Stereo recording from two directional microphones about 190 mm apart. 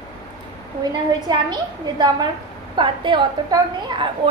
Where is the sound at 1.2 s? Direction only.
20° right (ahead or behind).